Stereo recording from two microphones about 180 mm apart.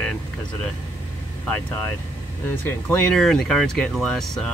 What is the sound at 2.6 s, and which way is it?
Speech, 10° left (ahead or behind).